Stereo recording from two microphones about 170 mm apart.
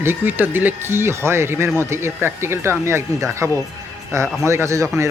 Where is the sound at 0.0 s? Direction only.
15° right (ahead or behind).